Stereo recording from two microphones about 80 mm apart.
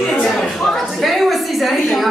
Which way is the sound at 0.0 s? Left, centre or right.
Centre.